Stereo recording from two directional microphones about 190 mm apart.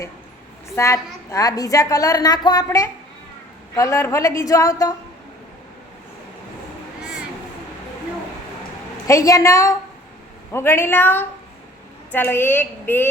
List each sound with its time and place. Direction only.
0.8 s a woman's voice: 15° left (ahead or behind)
9.0 s a woman's voice: 15° left (ahead or behind)